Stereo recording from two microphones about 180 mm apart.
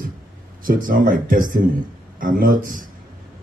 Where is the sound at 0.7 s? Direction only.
50° right (ahead or behind).